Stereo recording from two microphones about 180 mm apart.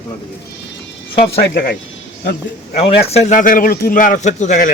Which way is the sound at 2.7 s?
35° left (ahead or behind).